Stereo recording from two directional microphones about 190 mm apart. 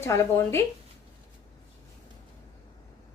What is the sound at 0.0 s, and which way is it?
Speech, 15° left (ahead or behind).